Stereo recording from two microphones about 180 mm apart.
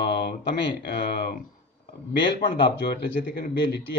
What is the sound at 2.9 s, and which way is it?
Speech, 70° left (ahead or behind).